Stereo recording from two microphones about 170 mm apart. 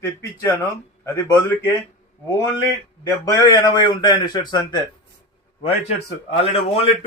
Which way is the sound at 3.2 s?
25° left (ahead or behind).